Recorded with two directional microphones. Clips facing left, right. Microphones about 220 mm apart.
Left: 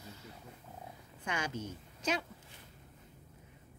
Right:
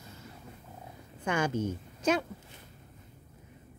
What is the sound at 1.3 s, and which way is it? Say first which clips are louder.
A woman's voice: right 9 dB; 50° right (ahead or behind).